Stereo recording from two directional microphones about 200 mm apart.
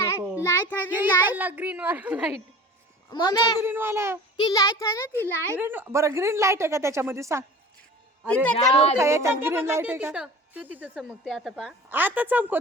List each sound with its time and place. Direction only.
0.2 s a sound: 10° right (ahead or behind)
0.4 s a sound: 10° left (ahead or behind)
0.9 s a woman's voice: 10° right (ahead or behind)
3.1 s a woman's voice: 20° left (ahead or behind)
3.6 s a woman's voice: 10° right (ahead or behind)
4.4 s a child's voice: 20° left (ahead or behind)
5.5 s a woman's voice: 10° right (ahead or behind)
8.7 s speech: 30° left (ahead or behind)
9.0 s a woman's voice: 15° right (ahead or behind)
11.9 s a woman's voice: 10° right (ahead or behind)